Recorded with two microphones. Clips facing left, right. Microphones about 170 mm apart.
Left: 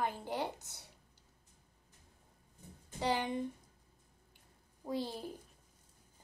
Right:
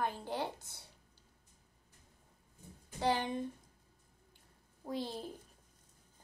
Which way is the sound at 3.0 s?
15° left (ahead or behind).